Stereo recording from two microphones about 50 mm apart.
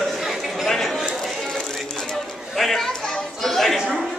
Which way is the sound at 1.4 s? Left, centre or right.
Centre.